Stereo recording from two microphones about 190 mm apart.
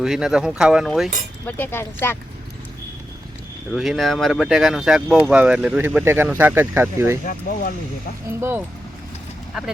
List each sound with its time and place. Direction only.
0.0 s speech: 5° right (ahead or behind)
1.5 s speech: 10° left (ahead or behind)
3.7 s speech: centre (ahead or behind)
7.3 s speech: 50° left (ahead or behind)
8.3 s speech: 10° right (ahead or behind)